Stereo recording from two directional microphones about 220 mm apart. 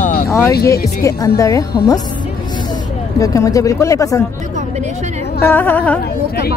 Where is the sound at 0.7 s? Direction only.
15° left (ahead or behind).